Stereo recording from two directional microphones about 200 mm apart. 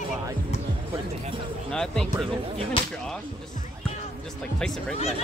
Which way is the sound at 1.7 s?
5° left (ahead or behind).